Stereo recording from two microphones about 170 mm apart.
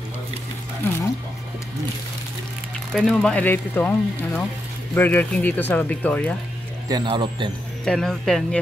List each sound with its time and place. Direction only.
2.9 s speech: centre (ahead or behind)
6.9 s speech: 25° right (ahead or behind)
7.8 s speech: centre (ahead or behind)